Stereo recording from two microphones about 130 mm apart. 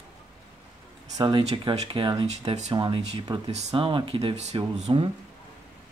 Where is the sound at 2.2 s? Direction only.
60° right (ahead or behind).